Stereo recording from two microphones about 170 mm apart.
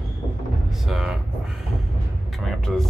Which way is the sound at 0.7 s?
Centre (ahead or behind).